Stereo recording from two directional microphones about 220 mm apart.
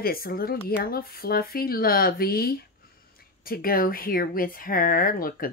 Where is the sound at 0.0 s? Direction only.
40° left (ahead or behind).